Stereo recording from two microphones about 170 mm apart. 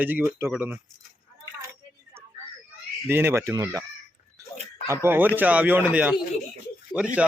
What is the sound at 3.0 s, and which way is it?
Speech, 15° right (ahead or behind).